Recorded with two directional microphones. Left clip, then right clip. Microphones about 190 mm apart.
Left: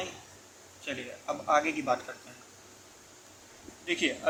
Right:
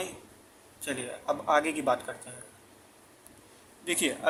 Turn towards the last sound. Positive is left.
turn(degrees=-30)  # may be behind; listen again after turning